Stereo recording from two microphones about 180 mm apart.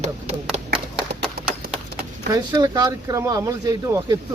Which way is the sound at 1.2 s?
60° right (ahead or behind).